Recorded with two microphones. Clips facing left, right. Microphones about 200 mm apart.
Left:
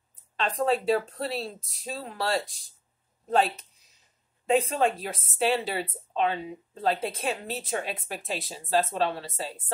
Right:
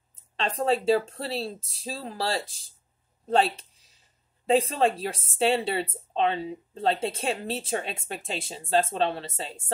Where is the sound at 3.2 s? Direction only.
30° right (ahead or behind).